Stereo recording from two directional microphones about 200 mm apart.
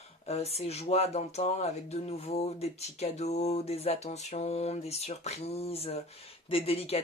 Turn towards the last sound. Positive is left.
turn(degrees=30)  # may be behind; listen again after turning